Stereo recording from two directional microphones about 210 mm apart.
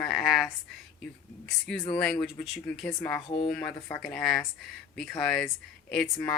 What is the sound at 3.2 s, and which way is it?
Speech, 25° left (ahead or behind).